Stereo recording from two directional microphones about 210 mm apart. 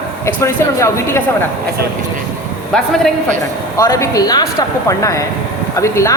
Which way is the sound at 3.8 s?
15° left (ahead or behind).